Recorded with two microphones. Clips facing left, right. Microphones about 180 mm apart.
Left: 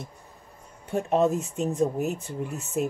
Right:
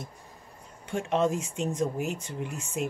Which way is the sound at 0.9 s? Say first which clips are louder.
Left 3 dB; 40° left (ahead or behind).